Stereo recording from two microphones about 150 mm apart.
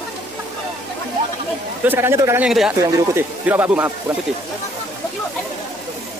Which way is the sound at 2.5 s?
5° right (ahead or behind).